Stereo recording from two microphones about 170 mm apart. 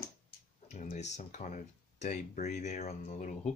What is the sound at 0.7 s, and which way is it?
Speech, 45° left (ahead or behind).